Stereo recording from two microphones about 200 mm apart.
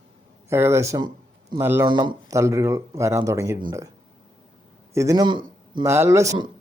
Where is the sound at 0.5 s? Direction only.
15° right (ahead or behind).